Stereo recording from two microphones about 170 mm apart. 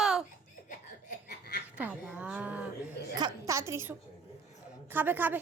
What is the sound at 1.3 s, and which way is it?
Snicker, 65° left (ahead or behind).